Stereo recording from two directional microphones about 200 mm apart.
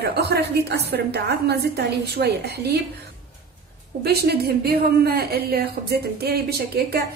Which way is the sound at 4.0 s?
50° right (ahead or behind).